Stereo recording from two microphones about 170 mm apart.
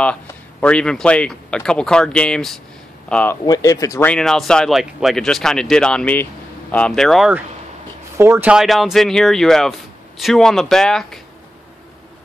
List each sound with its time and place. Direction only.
0.0 s speech: 5° left (ahead or behind)
3.4 s speech: 20° left (ahead or behind)
4.1 s speech: centre (ahead or behind)